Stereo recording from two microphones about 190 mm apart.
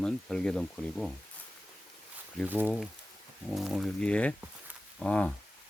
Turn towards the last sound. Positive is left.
turn(degrees=5)  # may be behind; listen again after turning